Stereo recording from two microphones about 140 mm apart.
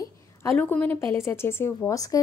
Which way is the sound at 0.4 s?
15° left (ahead or behind).